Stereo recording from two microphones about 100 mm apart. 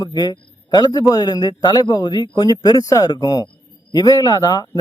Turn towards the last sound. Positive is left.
turn(degrees=40)  # may be behind; listen again after turning